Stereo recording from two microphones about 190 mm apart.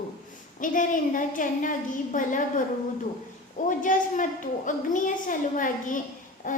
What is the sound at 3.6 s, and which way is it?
A woman's voice, 45° left (ahead or behind).